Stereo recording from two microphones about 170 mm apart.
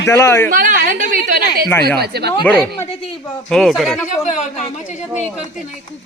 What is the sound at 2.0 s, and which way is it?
Speech, 70° right (ahead or behind).